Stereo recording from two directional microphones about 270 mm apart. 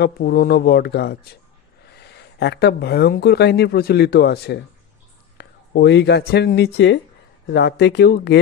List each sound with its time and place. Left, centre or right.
0.0 s speech: left